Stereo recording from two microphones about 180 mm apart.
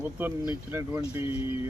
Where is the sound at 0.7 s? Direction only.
15° right (ahead or behind).